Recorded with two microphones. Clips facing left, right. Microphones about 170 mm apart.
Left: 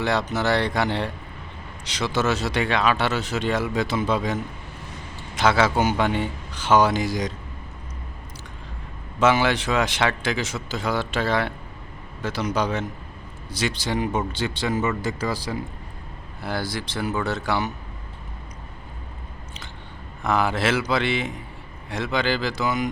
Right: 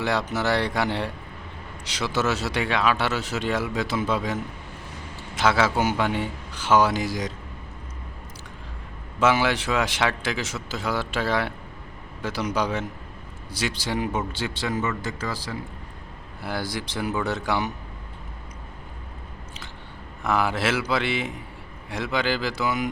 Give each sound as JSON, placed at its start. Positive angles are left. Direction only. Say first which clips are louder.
{"t": 0.0, "sound": "speech", "louder": "left 2 dB", "side_deg": -10}
{"t": 5.4, "sound": "a man's voice", "louder": "left 2 dB", "side_deg": -5}
{"t": 9.2, "sound": "speech", "louder": "left 2 dB", "side_deg": -5}
{"t": 14.8, "sound": "speech", "louder": "left 3 dB", "side_deg": 15}
{"t": 16.4, "sound": "speech", "louder": "left 1 dB", "side_deg": -10}
{"t": 20.2, "sound": "speech", "louder": "left 2 dB", "side_deg": -5}